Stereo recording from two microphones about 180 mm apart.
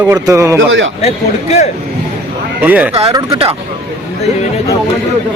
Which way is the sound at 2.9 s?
35° right (ahead or behind).